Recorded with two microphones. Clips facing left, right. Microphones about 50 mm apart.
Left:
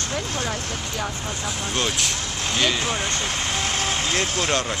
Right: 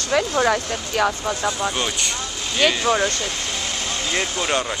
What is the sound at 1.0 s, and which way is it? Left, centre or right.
Speech, right.